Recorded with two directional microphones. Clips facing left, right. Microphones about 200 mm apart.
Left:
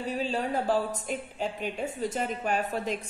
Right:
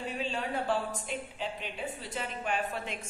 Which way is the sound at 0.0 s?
40° left (ahead or behind).